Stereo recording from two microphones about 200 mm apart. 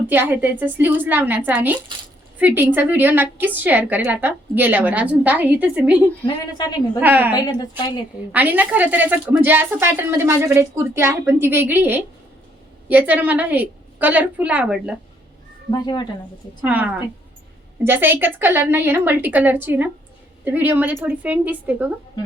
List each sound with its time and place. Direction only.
0.1 s a woman's voice: 10° right (ahead or behind)
6.2 s a woman's voice: 20° left (ahead or behind)
7.0 s a woman's voice: 10° right (ahead or behind)
7.3 s a woman's voice: 20° left (ahead or behind)
8.3 s a woman's voice: 10° right (ahead or behind)
15.7 s a woman's voice: 20° left (ahead or behind)
16.6 s a woman's voice: 5° right (ahead or behind)